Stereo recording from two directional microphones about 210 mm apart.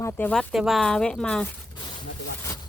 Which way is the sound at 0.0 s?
10° left (ahead or behind).